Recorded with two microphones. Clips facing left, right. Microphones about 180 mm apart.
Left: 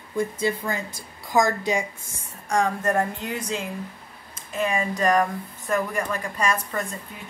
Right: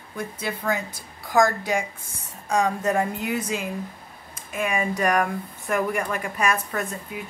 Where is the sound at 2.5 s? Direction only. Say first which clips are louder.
Even; 5° right (ahead or behind).